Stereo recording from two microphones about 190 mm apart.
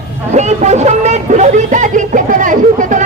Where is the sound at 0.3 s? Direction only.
35° right (ahead or behind).